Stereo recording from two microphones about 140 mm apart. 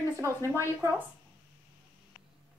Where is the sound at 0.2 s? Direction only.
20° right (ahead or behind).